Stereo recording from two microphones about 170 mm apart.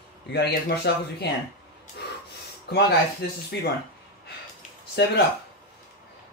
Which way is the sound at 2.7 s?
75° left (ahead or behind).